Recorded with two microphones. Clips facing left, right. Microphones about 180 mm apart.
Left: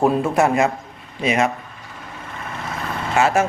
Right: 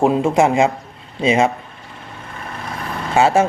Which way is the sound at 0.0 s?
25° right (ahead or behind).